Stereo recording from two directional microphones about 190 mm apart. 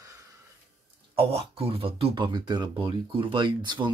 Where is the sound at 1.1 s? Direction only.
30° right (ahead or behind).